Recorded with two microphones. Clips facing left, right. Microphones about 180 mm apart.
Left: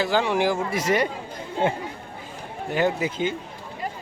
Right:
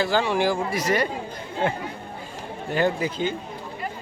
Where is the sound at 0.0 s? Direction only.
15° left (ahead or behind).